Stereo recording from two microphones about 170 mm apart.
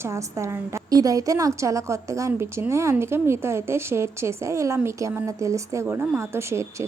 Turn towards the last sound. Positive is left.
turn(degrees=-15)  # may be behind; listen again after turning